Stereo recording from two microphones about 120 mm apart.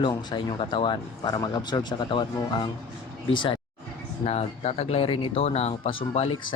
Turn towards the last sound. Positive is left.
turn(degrees=50)  # may be behind; listen again after turning